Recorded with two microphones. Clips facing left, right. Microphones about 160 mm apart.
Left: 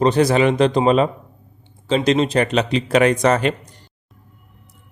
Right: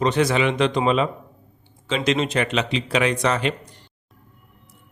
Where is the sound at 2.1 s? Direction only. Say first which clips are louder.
Left 4 dB; 35° left (ahead or behind).